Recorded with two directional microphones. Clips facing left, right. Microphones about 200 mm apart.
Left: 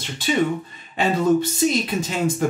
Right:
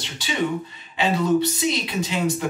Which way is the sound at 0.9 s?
45° left (ahead or behind).